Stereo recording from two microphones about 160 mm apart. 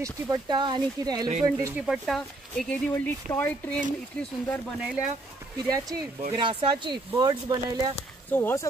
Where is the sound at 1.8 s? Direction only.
Centre (ahead or behind).